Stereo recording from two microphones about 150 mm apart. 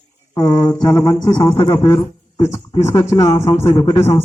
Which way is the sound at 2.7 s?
25° left (ahead or behind).